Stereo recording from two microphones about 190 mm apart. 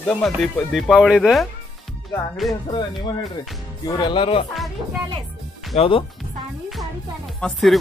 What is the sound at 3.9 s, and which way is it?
Speech, 25° left (ahead or behind).